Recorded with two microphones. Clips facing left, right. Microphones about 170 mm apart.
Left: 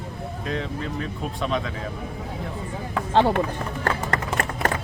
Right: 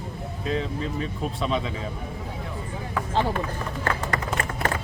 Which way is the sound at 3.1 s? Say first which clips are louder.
Left 6 dB; 70° left (ahead or behind).